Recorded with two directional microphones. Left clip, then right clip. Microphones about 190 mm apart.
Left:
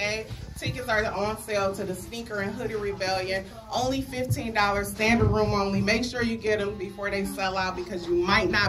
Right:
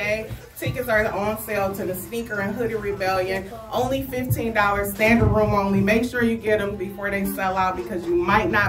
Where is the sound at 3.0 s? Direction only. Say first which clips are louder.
Right 7 dB; 15° right (ahead or behind).